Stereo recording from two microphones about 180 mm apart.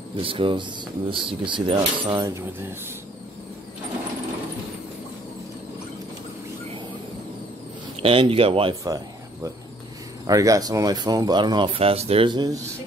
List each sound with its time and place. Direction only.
0.2 s speech: 30° right (ahead or behind)
8.0 s speech: 30° right (ahead or behind)
8.8 s a sound: 20° right (ahead or behind)
10.2 s speech: 20° right (ahead or behind)